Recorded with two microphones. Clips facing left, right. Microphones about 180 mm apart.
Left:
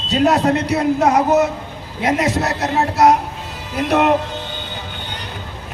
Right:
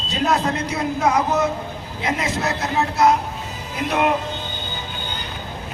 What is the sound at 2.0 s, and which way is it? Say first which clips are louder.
Speech: left 6 dB; 70° left (ahead or behind).